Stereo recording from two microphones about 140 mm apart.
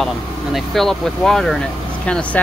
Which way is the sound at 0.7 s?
5° left (ahead or behind).